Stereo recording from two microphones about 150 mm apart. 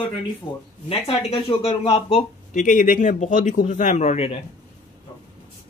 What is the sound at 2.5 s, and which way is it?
A man's voice, 60° left (ahead or behind).